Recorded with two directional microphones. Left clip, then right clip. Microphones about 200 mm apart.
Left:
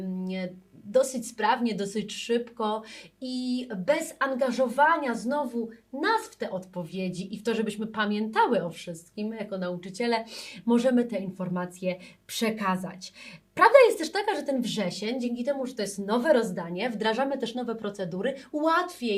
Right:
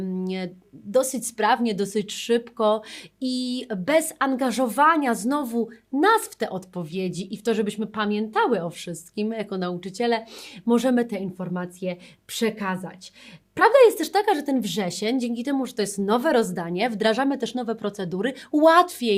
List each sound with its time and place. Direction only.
0.2 s a woman's voice: 45° right (ahead or behind); by 8.6 s 25° right (ahead or behind)
8.8 s a woman's voice: 45° right (ahead or behind)